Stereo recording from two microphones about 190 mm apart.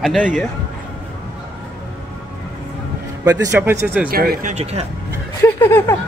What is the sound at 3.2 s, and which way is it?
Speech, 15° right (ahead or behind).